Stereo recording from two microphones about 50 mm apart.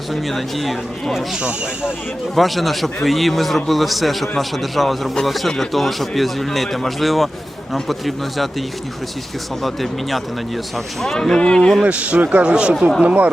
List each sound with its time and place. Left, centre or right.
0.1 s a man's voice: centre
2.3 s a man's voice: centre
9.6 s a man's voice: centre
11.8 s speech: right